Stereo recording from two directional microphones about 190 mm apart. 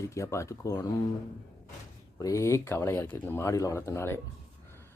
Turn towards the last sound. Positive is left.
turn(degrees=15)  # may be behind; listen again after turning